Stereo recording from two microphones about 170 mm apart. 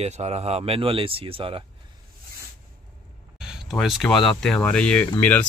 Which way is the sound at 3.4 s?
Centre (ahead or behind).